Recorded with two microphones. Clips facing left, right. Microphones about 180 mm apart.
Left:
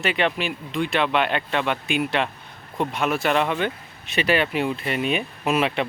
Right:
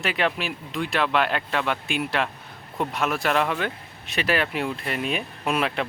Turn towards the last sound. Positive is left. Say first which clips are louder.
# left 3 dB
turn(degrees=5)  # may be behind; listen again after turning